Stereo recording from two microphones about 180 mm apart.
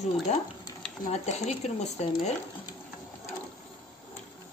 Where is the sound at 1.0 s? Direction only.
40° left (ahead or behind).